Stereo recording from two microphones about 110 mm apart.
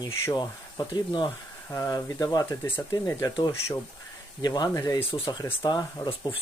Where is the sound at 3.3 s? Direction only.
40° left (ahead or behind).